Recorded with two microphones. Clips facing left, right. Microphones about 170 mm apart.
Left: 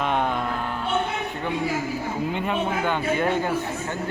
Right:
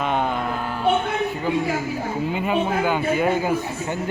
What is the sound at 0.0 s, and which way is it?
Music, centre (ahead or behind).